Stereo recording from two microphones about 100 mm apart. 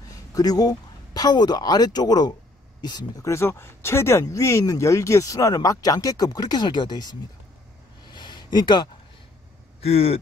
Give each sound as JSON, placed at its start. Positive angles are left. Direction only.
{"t": 0.1, "sound": "speech", "side_deg": 40}
{"t": 3.3, "sound": "speech", "side_deg": 25}
{"t": 8.1, "sound": "a sound", "side_deg": 50}
{"t": 9.8, "sound": "speech", "side_deg": 90}